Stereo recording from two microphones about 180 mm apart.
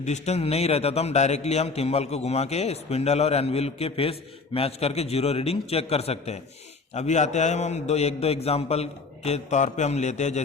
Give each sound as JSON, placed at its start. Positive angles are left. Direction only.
{"t": 0.0, "sound": "a man's voice", "side_deg": 40}